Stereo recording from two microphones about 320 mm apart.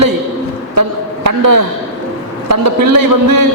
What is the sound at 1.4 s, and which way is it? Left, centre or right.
Speech, right.